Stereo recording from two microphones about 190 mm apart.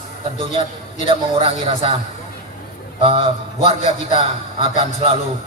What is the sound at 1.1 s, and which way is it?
Speech, 30° right (ahead or behind).